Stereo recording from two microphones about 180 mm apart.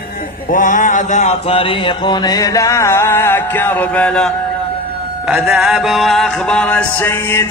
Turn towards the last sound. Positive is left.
turn(degrees=10)  # may be behind; listen again after turning